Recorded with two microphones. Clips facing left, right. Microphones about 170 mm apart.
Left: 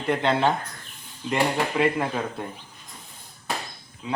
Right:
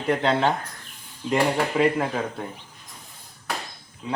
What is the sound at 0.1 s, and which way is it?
Speech, centre (ahead or behind).